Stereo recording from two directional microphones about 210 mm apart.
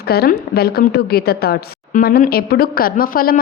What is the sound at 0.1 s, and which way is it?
Speech, 50° left (ahead or behind).